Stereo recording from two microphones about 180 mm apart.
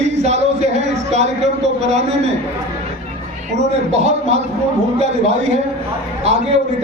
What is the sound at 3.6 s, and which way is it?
Speech, 35° right (ahead or behind).